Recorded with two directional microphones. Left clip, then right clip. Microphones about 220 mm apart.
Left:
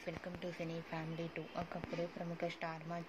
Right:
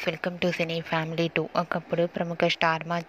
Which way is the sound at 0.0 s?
35° right (ahead or behind).